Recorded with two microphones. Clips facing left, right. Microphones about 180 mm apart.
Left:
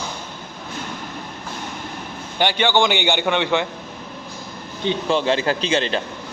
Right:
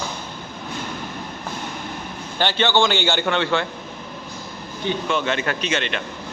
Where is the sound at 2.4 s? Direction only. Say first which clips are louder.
Left 1 dB; 15° left (ahead or behind).